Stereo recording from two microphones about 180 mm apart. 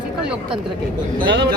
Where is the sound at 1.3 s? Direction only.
70° right (ahead or behind).